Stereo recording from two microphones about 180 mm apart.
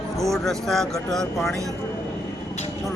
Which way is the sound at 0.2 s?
Centre (ahead or behind).